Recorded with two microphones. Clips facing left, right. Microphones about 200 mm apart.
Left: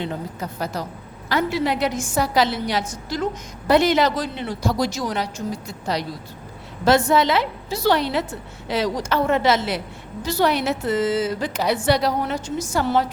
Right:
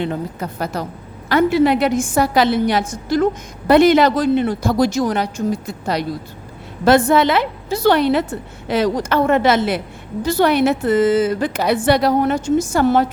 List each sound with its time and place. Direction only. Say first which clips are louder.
0.0 s a woman's voice: right 5 dB; 60° right (ahead or behind)